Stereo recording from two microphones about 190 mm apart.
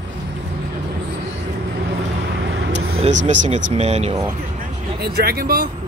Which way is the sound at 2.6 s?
75° right (ahead or behind).